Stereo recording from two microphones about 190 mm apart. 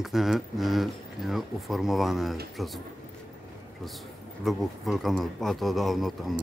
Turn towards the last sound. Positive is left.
turn(degrees=0)  # may be behind; listen again after turning